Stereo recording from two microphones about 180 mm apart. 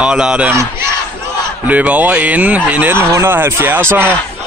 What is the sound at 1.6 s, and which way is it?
Speech, 10° right (ahead or behind).